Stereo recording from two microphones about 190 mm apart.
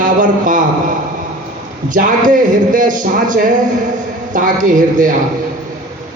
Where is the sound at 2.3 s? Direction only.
45° right (ahead or behind).